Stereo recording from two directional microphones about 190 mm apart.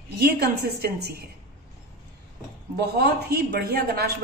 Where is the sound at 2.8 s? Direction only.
60° right (ahead or behind).